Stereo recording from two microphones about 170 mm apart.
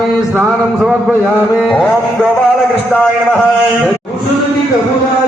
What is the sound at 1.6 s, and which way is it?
Carnatic music, 5° left (ahead or behind).